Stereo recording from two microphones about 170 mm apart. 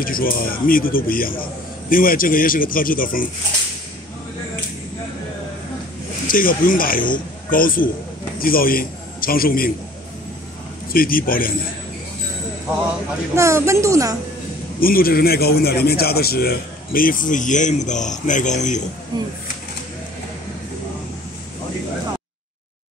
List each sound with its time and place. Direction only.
0.0 s a man's voice: 55° left (ahead or behind)
6.2 s a man's voice: 55° left (ahead or behind)
10.9 s a man's voice: 60° left (ahead or behind)
13.3 s a woman's voice: 15° right (ahead or behind)
14.8 s a man's voice: 60° left (ahead or behind)
19.1 s speech: 25° right (ahead or behind)